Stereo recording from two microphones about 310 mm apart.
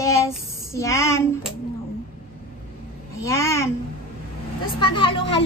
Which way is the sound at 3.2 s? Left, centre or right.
Centre.